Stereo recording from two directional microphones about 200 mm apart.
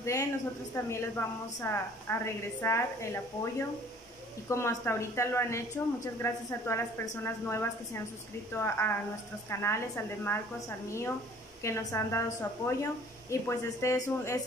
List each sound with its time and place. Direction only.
0.0 s a woman's voice: 15° left (ahead or behind)
11.6 s a woman's voice: 15° left (ahead or behind)